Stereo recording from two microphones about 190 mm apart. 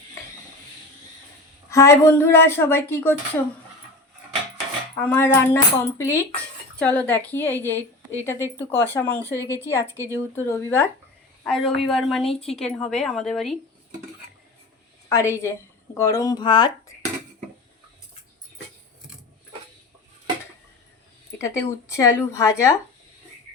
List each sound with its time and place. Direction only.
1.7 s speech: 15° left (ahead or behind)
4.9 s speech: 10° left (ahead or behind)
9.1 s a woman's voice: 15° right (ahead or behind)
9.6 s speech: 15° left (ahead or behind)
11.4 s a woman's voice: centre (ahead or behind)
15.1 s speech: 15° left (ahead or behind)
21.3 s speech: 15° left (ahead or behind)